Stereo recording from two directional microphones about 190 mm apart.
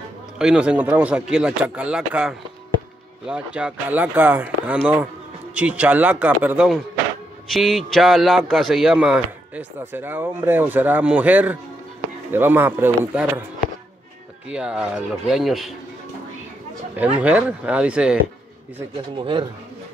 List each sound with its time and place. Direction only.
0.4 s a man's voice: 5° right (ahead or behind)
14.5 s a man's voice: 5° right (ahead or behind)
16.9 s speech: 10° right (ahead or behind)
19.1 s speech: 25° right (ahead or behind)